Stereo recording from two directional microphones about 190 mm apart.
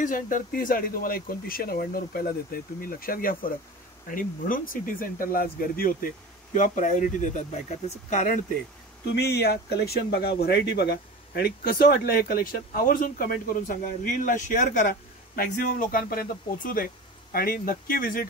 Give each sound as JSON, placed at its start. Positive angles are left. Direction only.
{"t": 0.0, "sound": "speech", "side_deg": 45}
{"t": 9.2, "sound": "speech", "side_deg": 60}